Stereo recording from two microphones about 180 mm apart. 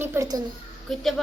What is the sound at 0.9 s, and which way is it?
Speech, centre (ahead or behind).